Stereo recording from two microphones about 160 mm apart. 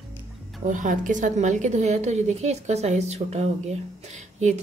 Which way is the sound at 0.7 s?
55° right (ahead or behind).